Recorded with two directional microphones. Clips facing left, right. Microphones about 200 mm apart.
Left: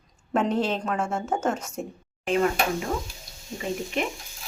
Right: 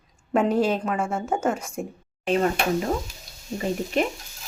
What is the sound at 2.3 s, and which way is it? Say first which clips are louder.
Speech: right 1 dB; 40° right (ahead or behind).